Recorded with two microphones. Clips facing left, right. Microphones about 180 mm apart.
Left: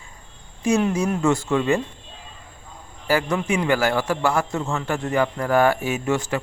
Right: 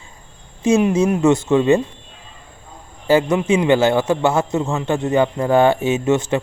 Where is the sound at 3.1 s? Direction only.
20° right (ahead or behind).